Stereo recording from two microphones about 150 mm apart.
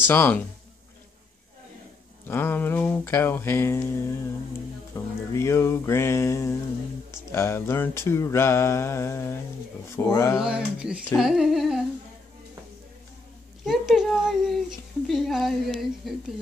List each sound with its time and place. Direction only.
0.0 s mantra: 15° left (ahead or behind)
2.2 s mantra: 15° left (ahead or behind)
4.9 s music: 20° left (ahead or behind)
7.2 s mantra: 20° left (ahead or behind)
10.4 s speech: 5° right (ahead or behind)
13.7 s speech: 5° right (ahead or behind)